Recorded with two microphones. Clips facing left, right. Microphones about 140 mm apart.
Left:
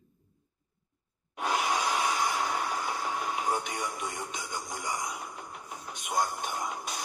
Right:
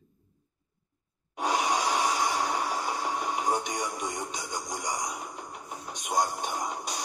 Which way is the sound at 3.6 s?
5° left (ahead or behind).